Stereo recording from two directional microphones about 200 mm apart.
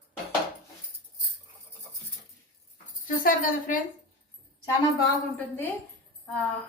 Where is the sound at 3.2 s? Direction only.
40° left (ahead or behind).